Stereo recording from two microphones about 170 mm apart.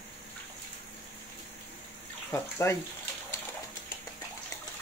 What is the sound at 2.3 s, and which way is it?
Speech, 15° left (ahead or behind).